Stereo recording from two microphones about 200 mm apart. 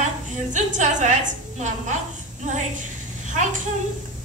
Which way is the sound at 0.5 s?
40° right (ahead or behind).